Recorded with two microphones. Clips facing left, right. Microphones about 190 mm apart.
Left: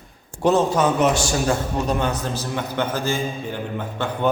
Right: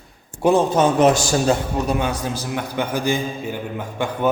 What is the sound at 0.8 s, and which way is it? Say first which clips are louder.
Speech: right 3 dB; 35° right (ahead or behind).